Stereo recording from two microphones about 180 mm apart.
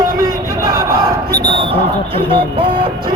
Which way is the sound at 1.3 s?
25° right (ahead or behind).